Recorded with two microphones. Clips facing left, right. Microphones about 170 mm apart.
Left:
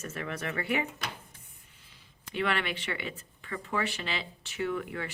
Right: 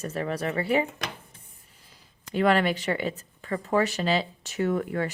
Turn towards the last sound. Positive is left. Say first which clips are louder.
# right 7 dB
turn(degrees=-40)  # may be behind; listen again after turning